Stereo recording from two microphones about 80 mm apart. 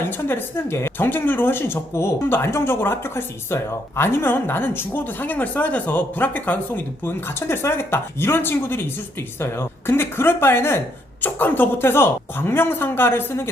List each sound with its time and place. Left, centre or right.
0.0 s a woman's voice: left